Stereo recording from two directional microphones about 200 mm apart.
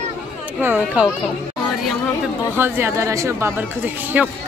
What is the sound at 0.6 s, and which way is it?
Speech, 10° right (ahead or behind).